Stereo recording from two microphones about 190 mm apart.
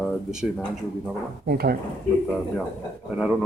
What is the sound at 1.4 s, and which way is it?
Speech, 55° right (ahead or behind).